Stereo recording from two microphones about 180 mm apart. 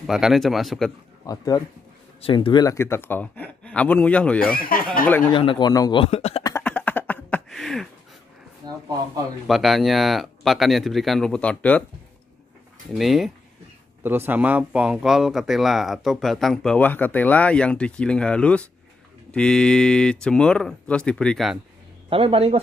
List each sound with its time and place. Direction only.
0.0 s speech: centre (ahead or behind)
1.2 s speech: 20° left (ahead or behind)
4.6 s speech: 50° left (ahead or behind)
5.3 s speech: 25° left (ahead or behind)
6.6 s a sound: 10° left (ahead or behind)
8.6 s speech: 20° right (ahead or behind)
9.5 s speech: centre (ahead or behind)
12.9 s speech: centre (ahead or behind)
14.0 s speech: 10° right (ahead or behind)
22.1 s speech: 30° right (ahead or behind)